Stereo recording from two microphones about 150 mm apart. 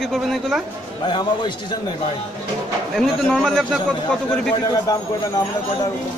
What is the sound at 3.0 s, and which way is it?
Speech, 5° left (ahead or behind).